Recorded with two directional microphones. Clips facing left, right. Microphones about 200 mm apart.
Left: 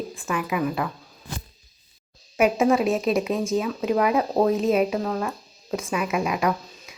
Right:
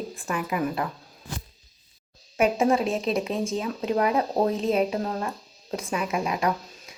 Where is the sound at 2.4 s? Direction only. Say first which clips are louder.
Left 2 dB; 30° right (ahead or behind).